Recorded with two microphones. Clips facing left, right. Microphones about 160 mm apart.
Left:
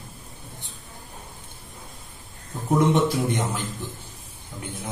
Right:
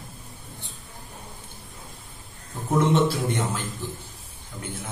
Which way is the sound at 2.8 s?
15° left (ahead or behind).